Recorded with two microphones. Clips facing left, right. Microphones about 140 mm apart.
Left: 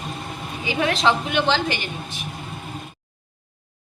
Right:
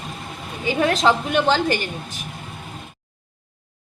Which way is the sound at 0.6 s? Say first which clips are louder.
Right 3 dB; 45° right (ahead or behind).